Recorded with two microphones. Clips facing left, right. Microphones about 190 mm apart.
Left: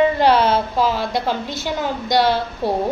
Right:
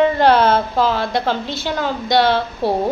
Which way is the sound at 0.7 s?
10° left (ahead or behind).